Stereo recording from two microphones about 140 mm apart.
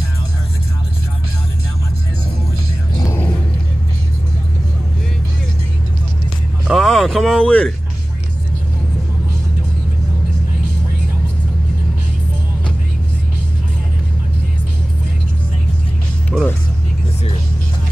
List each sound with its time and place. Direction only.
3.0 s music: 25° left (ahead or behind)
6.7 s a sound: centre (ahead or behind)
16.3 s music: 10° left (ahead or behind)